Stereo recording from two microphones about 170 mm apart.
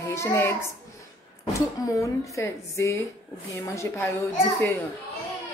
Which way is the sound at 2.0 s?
20° left (ahead or behind).